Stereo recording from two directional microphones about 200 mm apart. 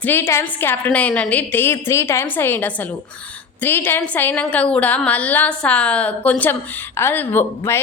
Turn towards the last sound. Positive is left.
turn(degrees=10)  # may be behind; listen again after turning